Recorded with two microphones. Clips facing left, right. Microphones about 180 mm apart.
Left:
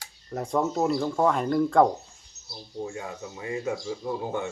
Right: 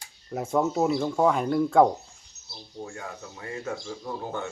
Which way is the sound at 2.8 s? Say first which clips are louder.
Left 3 dB; 15° left (ahead or behind).